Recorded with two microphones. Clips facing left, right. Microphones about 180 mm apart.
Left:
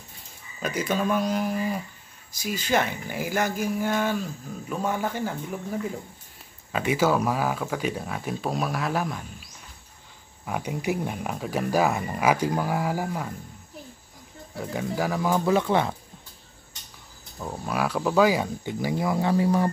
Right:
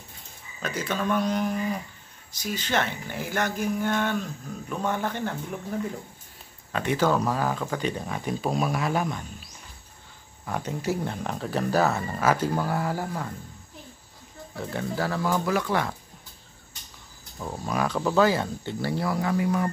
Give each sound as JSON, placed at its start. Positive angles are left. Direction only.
{"t": 0.6, "sound": "speech", "side_deg": 10}
{"t": 10.4, "sound": "speech", "side_deg": 10}
{"t": 14.6, "sound": "speech", "side_deg": 10}
{"t": 17.4, "sound": "speech", "side_deg": 5}